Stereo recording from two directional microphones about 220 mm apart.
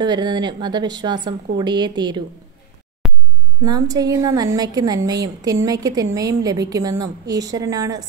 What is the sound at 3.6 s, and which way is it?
Speech, 20° right (ahead or behind).